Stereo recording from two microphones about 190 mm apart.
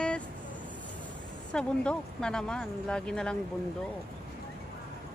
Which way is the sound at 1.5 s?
5° left (ahead or behind).